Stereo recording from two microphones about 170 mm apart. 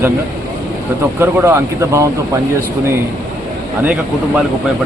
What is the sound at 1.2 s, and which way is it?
Speech, 15° right (ahead or behind).